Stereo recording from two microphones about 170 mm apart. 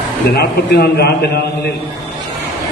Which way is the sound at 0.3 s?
70° left (ahead or behind).